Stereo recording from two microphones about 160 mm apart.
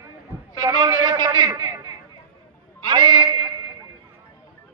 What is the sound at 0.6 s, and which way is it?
A man's voice, 25° right (ahead or behind).